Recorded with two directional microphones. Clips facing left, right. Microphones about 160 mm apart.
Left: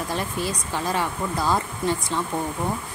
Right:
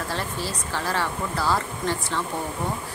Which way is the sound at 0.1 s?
15° left (ahead or behind).